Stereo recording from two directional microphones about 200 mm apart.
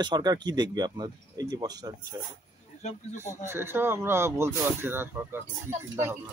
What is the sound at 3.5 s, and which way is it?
Speech, 10° right (ahead or behind).